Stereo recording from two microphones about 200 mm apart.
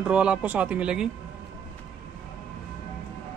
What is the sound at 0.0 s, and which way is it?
Speech, 5° right (ahead or behind).